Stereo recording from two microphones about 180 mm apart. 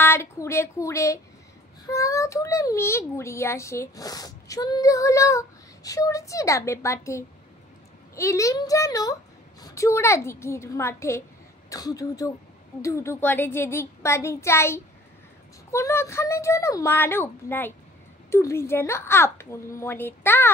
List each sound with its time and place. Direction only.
0.0 s a child's voice: 15° left (ahead or behind)